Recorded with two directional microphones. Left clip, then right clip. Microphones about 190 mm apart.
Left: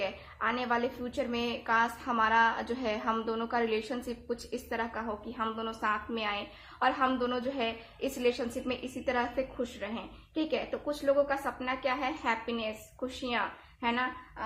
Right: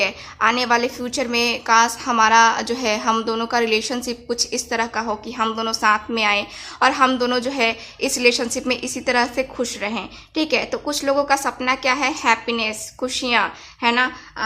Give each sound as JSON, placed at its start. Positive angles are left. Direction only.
{"t": 0.0, "sound": "a woman's voice", "side_deg": -35}